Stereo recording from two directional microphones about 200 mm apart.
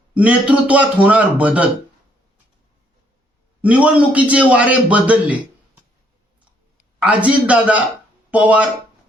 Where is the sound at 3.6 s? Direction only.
5° right (ahead or behind).